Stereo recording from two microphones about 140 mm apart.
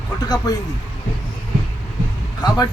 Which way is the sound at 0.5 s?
25° left (ahead or behind).